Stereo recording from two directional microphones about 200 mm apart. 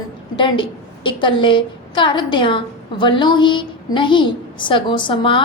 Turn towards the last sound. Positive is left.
turn(degrees=25)  # may be behind; listen again after turning